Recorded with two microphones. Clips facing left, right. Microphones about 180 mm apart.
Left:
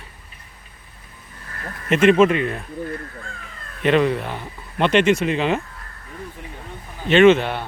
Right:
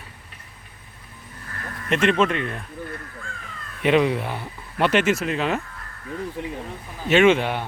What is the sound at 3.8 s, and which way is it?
Speech, 10° right (ahead or behind).